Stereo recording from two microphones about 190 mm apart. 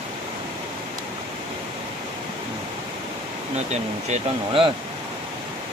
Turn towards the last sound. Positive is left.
turn(degrees=-30)  # may be behind; listen again after turning